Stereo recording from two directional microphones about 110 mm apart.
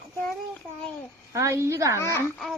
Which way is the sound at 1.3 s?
30° right (ahead or behind).